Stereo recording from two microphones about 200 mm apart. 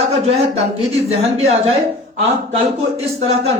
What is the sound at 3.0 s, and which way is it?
Speech, 30° right (ahead or behind).